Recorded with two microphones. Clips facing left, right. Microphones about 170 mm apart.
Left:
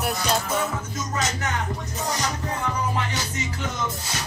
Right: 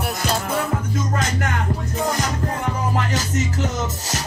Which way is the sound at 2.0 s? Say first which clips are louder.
Right 4 dB; 55° right (ahead or behind).